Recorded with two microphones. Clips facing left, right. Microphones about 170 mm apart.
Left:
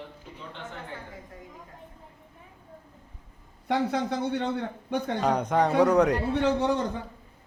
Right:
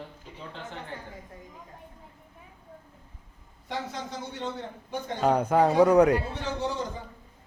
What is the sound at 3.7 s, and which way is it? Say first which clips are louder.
A man's voice: left 9 dB; 60° left (ahead or behind).